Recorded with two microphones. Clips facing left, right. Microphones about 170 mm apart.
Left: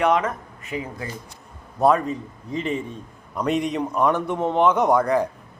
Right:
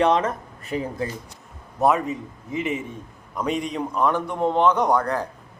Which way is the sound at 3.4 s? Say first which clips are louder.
Left 3 dB; centre (ahead or behind).